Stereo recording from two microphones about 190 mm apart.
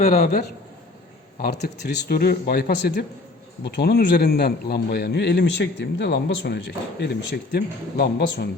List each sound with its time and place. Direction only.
0.0 s a man's voice: 50° left (ahead or behind)